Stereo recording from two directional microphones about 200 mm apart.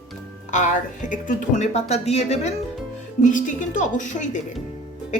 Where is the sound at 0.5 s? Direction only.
40° left (ahead or behind).